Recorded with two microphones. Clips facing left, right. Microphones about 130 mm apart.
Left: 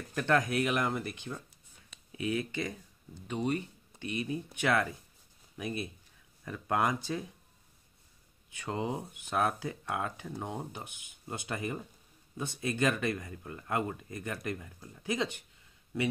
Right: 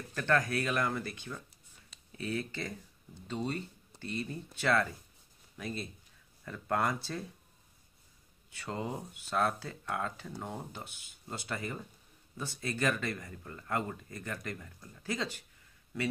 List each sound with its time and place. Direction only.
0.1 s speech: 15° left (ahead or behind)
8.5 s speech: 15° left (ahead or behind)